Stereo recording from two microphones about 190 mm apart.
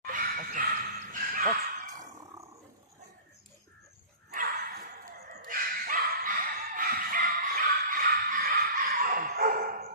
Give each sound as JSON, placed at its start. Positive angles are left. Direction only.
{"t": 0.1, "sound": "dog", "side_deg": -45}
{"t": 4.3, "sound": "bow-wow", "side_deg": -45}
{"t": 5.4, "sound": "dog", "side_deg": -45}